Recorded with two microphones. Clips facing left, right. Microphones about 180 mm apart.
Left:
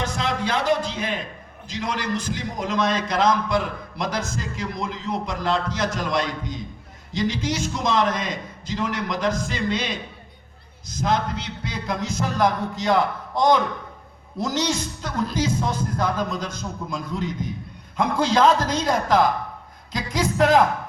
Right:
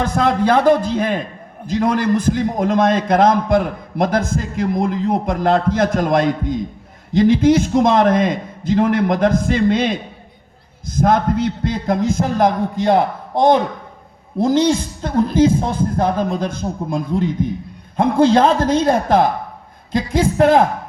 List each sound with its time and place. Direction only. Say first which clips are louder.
0.0 s a man's voice: right 9 dB; 55° right (ahead or behind)